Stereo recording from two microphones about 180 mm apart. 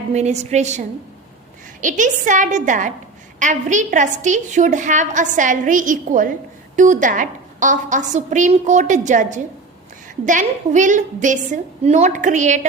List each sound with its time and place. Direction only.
0.1 s a woman's voice: 40° right (ahead or behind)